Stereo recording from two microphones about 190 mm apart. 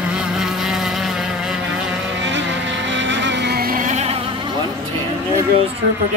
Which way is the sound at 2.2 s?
75° right (ahead or behind).